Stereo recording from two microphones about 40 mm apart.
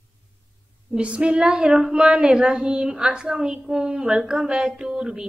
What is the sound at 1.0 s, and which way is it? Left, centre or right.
A woman's voice, right.